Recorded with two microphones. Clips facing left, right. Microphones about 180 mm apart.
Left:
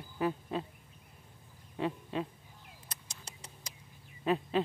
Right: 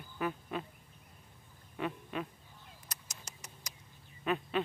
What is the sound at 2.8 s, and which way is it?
Rodents, 30° left (ahead or behind).